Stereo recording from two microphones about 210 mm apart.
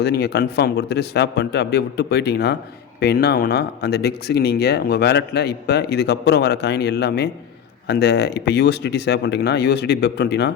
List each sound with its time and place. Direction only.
0.0 s speech: 50° left (ahead or behind)